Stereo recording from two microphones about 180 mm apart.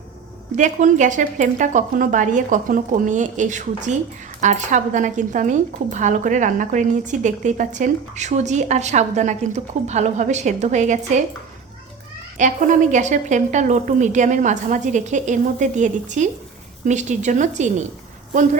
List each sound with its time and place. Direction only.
0.5 s a woman's voice: 45° right (ahead or behind)
12.4 s a woman's voice: 45° right (ahead or behind)